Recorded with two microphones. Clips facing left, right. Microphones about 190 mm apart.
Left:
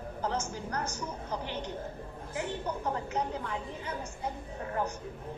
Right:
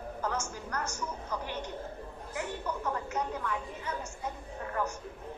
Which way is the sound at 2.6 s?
30° left (ahead or behind).